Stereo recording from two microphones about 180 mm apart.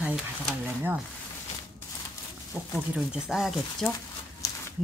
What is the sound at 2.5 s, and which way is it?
Speech, 5° right (ahead or behind).